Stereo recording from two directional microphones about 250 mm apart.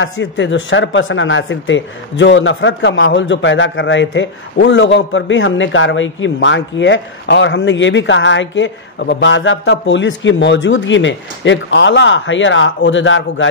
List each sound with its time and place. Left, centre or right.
0.0 s speech: left